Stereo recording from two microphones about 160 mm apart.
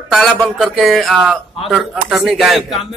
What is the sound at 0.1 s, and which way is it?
Speech, centre (ahead or behind).